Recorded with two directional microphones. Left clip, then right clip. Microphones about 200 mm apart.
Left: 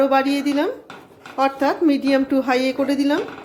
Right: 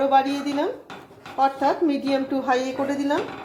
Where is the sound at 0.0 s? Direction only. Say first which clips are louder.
Left 2 dB; 35° left (ahead or behind).